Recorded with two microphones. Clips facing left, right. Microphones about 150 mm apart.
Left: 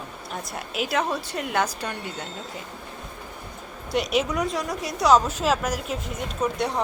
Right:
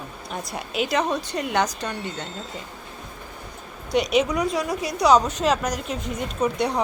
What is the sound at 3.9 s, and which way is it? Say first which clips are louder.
A woman's voice: right 3 dB; centre (ahead or behind).